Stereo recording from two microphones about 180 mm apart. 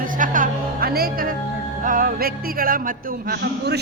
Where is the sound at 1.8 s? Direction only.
50° right (ahead or behind).